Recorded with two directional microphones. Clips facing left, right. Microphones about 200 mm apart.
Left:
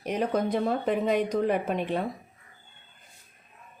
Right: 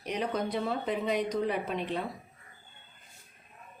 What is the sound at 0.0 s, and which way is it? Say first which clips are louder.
A woman's voice: left 5 dB; 50° left (ahead or behind).